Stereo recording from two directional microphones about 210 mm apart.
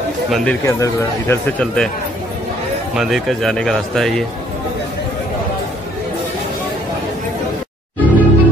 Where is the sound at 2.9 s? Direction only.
Centre (ahead or behind).